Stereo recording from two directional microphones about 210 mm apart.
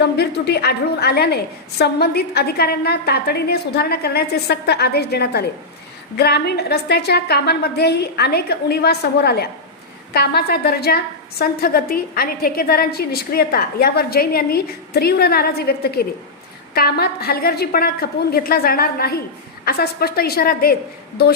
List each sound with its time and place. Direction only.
0.0 s a woman's voice: 50° left (ahead or behind)